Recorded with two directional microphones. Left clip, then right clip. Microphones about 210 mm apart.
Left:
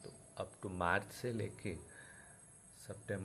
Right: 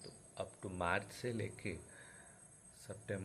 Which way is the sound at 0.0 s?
15° left (ahead or behind).